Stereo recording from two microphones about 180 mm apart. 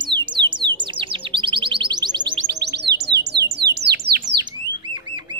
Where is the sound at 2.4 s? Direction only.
70° right (ahead or behind).